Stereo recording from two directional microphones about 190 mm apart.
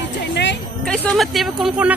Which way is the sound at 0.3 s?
65° left (ahead or behind).